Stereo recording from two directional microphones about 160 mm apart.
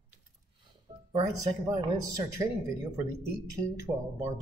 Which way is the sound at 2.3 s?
20° right (ahead or behind).